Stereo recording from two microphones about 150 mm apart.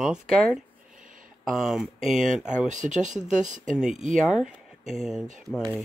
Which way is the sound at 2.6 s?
55° right (ahead or behind).